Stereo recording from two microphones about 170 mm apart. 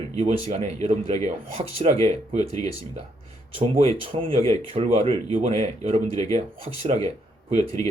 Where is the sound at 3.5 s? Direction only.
35° right (ahead or behind).